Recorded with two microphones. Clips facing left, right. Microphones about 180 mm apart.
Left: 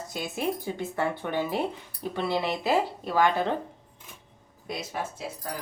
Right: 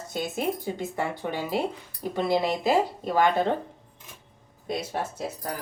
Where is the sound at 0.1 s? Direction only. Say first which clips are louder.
Right 2 dB; 20° right (ahead or behind).